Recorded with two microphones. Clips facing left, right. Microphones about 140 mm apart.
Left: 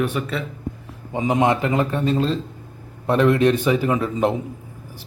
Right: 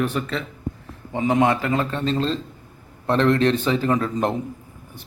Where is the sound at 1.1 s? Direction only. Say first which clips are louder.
Even; 20° left (ahead or behind).